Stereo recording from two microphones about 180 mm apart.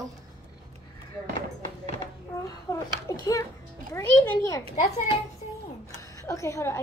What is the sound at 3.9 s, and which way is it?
Music, 15° left (ahead or behind).